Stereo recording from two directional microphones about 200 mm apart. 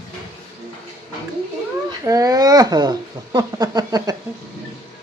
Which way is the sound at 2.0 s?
15° right (ahead or behind).